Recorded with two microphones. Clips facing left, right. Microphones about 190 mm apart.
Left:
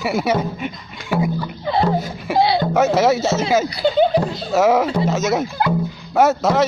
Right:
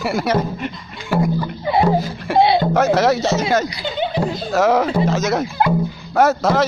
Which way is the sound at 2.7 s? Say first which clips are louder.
Even; centre (ahead or behind).